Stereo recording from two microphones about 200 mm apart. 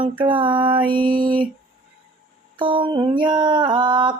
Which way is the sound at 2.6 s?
25° right (ahead or behind).